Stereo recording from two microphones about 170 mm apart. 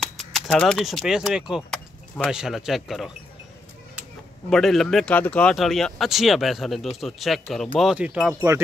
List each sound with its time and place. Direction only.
0.0 s speech: centre (ahead or behind)
4.5 s speech: centre (ahead or behind)
8.4 s speech: 15° right (ahead or behind)